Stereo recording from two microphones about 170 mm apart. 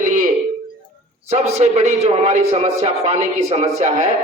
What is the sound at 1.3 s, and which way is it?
A man's voice, 40° right (ahead or behind).